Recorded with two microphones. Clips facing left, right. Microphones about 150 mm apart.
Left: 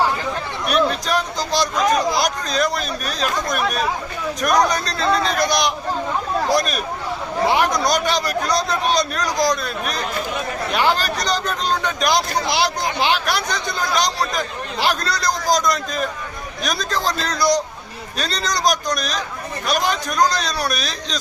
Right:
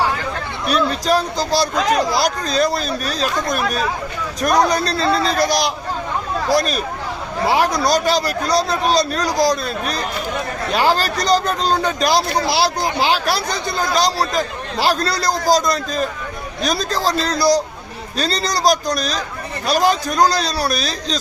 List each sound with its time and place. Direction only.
0.7 s speech: 35° right (ahead or behind)
7.9 s speech: 35° right (ahead or behind)